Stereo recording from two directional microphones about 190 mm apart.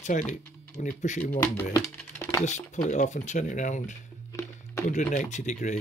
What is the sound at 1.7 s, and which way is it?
Music, 10° left (ahead or behind).